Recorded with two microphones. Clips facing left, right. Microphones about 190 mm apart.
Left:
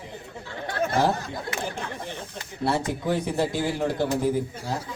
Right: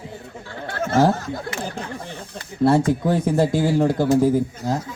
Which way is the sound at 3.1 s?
50° right (ahead or behind).